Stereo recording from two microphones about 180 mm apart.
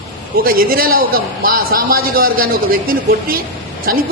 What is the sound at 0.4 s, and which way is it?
A woman's voice, 55° right (ahead or behind).